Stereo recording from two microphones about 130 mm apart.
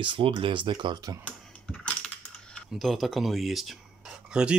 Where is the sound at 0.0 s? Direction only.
40° right (ahead or behind).